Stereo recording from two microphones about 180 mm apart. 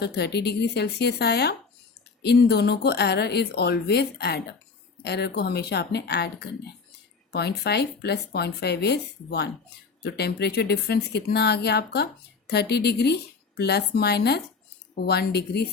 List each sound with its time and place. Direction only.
0.0 s a woman's voice: 65° left (ahead or behind)